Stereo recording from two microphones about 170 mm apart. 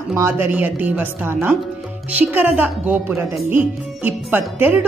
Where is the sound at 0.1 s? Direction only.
15° right (ahead or behind).